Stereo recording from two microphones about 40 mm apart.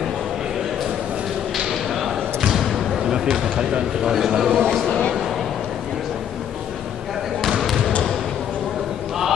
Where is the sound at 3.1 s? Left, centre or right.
Centre.